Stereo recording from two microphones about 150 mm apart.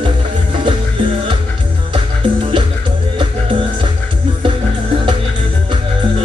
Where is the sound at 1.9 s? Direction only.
35° right (ahead or behind).